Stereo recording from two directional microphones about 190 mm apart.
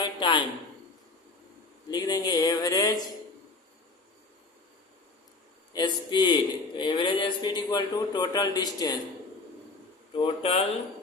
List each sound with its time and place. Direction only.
0.0 s a sound: 25° left (ahead or behind)
1.9 s a man's voice: 20° left (ahead or behind)
5.7 s a man's voice: 25° left (ahead or behind)
10.2 s speech: 30° left (ahead or behind)